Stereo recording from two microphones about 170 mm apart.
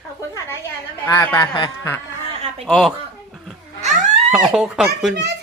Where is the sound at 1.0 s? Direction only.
15° left (ahead or behind).